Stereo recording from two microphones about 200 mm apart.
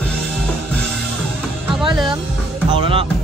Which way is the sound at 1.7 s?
Centre (ahead or behind).